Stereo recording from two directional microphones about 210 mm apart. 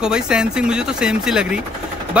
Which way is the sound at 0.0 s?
5° right (ahead or behind).